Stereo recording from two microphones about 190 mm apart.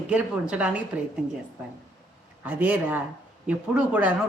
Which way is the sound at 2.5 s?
10° right (ahead or behind).